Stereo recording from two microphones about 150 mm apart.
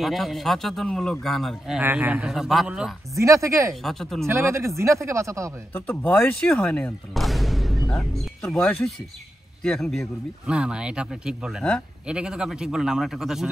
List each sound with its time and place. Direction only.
0.0 s speech: centre (ahead or behind)
1.8 s speech: 10° right (ahead or behind)
3.2 s speech: 20° right (ahead or behind)
3.8 s speech: centre (ahead or behind)
4.3 s speech: 20° right (ahead or behind)
5.7 s speech: 15° left (ahead or behind); by 13.5 s centre (ahead or behind)